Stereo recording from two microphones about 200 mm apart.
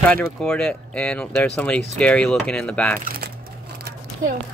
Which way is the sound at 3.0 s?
50° right (ahead or behind).